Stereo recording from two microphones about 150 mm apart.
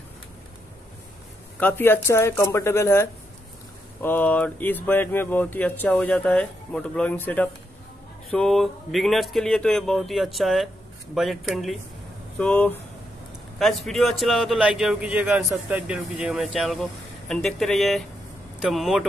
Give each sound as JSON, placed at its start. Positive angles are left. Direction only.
{"t": 1.6, "sound": "a man's voice", "side_deg": 15}